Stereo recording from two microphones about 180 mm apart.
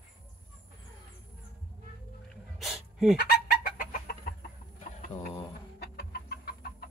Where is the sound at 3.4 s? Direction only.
55° left (ahead or behind).